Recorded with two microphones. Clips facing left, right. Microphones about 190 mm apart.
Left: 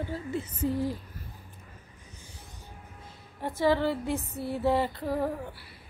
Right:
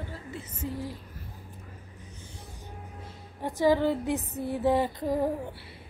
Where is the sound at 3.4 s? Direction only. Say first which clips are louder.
Right 2 dB; 15° right (ahead or behind).